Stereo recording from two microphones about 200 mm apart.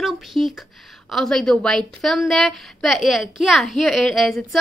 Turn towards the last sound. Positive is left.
turn(degrees=0)  # may be behind; listen again after turning